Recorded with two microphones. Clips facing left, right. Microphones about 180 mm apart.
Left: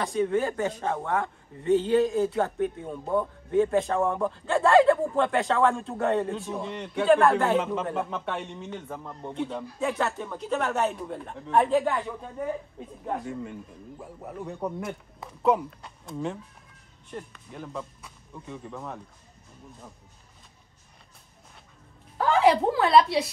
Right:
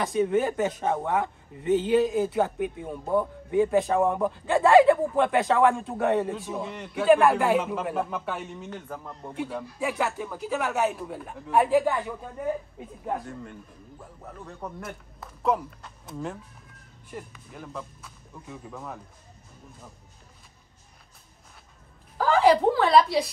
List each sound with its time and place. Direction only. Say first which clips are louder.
0.0 s a man's voice: right 2 dB; 20° right (ahead or behind)
6.3 s a man's voice: left 1 dB; centre (ahead or behind)
13.0 s a man's voice: left 1 dB; 5° left (ahead or behind)
14.8 s a man's voice: left 4 dB; centre (ahead or behind)
22.1 s a man's voice: right 1 dB; centre (ahead or behind)